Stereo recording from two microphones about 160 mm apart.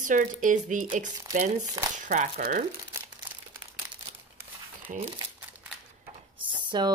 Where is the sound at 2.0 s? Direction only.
55° right (ahead or behind).